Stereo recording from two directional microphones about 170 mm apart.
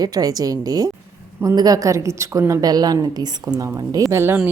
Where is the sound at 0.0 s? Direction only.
20° right (ahead or behind).